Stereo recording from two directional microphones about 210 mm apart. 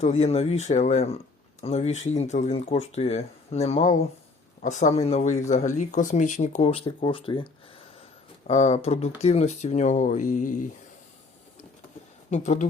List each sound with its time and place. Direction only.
0.0 s speech: 30° left (ahead or behind)
8.4 s speech: 30° left (ahead or behind)
12.3 s speech: 35° left (ahead or behind)